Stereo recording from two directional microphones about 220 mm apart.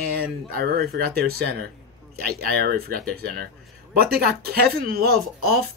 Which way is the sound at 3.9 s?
45° right (ahead or behind).